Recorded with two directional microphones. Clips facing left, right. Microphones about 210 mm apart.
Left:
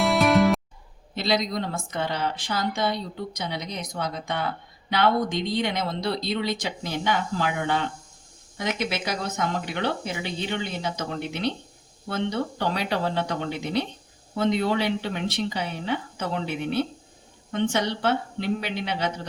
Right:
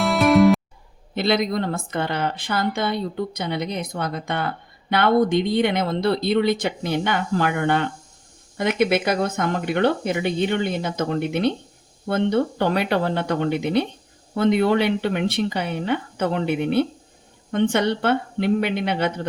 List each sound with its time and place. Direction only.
0.0 s music: centre (ahead or behind)
1.1 s speech: 55° right (ahead or behind)